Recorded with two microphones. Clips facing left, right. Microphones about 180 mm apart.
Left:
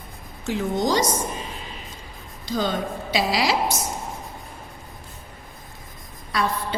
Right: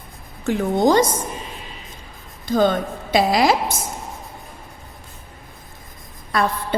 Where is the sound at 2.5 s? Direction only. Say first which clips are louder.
Right 7 dB; 50° right (ahead or behind).